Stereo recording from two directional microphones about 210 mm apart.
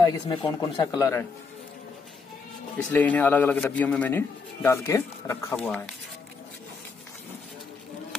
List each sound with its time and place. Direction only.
0.0 s a man's voice: 20° left (ahead or behind)
2.9 s a man's voice: 10° left (ahead or behind)